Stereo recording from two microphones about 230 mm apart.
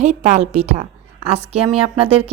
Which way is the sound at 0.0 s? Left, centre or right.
Right.